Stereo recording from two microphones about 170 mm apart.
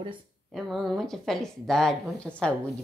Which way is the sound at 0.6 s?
Centre (ahead or behind).